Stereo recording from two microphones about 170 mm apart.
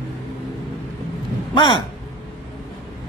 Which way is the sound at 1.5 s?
30° left (ahead or behind).